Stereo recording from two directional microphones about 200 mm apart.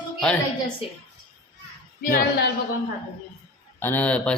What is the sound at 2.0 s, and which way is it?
Speech, 45° left (ahead or behind).